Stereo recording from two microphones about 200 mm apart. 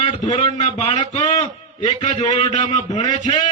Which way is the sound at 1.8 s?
30° left (ahead or behind).